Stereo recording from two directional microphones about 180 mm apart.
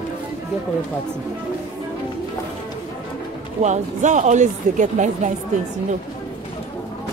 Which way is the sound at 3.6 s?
40° right (ahead or behind).